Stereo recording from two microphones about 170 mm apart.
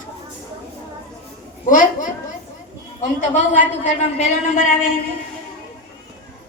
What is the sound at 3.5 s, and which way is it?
Speech, 45° left (ahead or behind).